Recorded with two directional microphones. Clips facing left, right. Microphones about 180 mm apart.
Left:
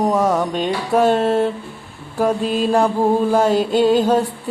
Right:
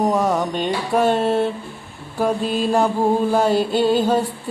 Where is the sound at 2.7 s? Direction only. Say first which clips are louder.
Left 2 dB; 5° right (ahead or behind).